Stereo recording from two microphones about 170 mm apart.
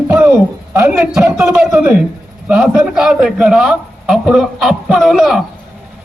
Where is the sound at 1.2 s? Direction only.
15° right (ahead or behind); by 5.4 s centre (ahead or behind).